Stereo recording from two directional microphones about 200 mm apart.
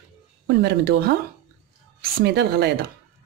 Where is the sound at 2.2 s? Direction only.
55° right (ahead or behind).